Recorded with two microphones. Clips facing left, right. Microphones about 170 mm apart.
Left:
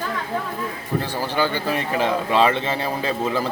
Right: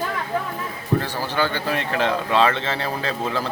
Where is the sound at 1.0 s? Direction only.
15° left (ahead or behind).